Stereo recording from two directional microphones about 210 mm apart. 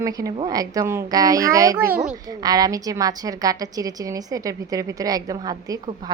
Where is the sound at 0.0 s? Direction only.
15° right (ahead or behind).